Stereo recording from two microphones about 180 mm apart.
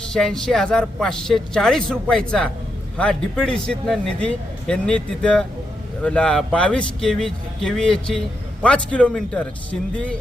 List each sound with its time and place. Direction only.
0.1 s a man's voice: 5° left (ahead or behind)